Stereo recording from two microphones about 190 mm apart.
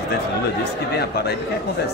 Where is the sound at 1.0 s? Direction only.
55° left (ahead or behind).